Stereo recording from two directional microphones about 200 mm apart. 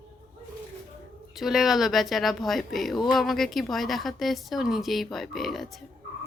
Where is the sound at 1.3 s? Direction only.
Centre (ahead or behind).